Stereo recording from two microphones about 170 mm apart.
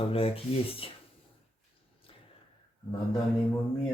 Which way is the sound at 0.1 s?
35° left (ahead or behind).